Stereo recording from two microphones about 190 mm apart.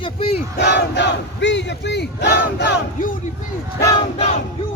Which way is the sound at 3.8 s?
20° left (ahead or behind).